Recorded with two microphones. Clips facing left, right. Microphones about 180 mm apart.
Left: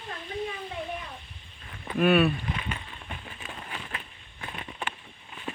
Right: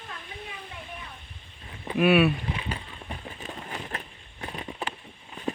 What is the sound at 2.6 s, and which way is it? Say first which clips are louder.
Vehicle: right 1 dB; 30° right (ahead or behind).